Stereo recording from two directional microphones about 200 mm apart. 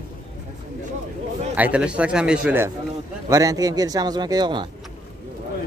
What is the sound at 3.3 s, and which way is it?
Speech, 15° right (ahead or behind).